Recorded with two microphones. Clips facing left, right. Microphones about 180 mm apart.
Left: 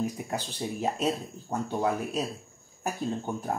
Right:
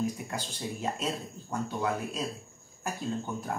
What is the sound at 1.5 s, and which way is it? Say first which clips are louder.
Speech: left 3 dB; 35° left (ahead or behind).